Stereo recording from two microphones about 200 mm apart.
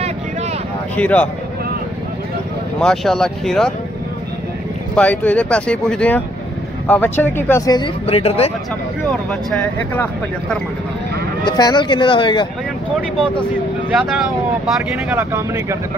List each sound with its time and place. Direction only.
0.9 s speech: 5° left (ahead or behind)
2.8 s speech: centre (ahead or behind)
4.9 s speech: 5° left (ahead or behind); by 8.5 s 30° left (ahead or behind)
9.3 s speech: centre (ahead or behind)
11.4 s speech: 20° left (ahead or behind)
13.9 s speech: centre (ahead or behind)
15.0 s speech: 10° right (ahead or behind)